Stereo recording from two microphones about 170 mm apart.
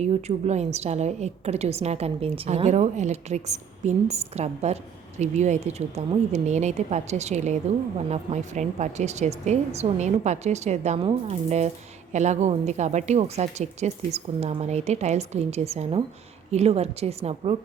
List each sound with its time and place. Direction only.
0.0 s a woman's voice: 40° right (ahead or behind)